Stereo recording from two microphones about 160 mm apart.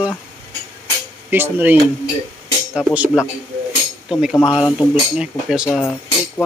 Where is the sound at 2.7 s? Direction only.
5° right (ahead or behind).